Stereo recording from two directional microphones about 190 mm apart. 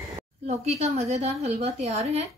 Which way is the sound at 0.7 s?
35° right (ahead or behind).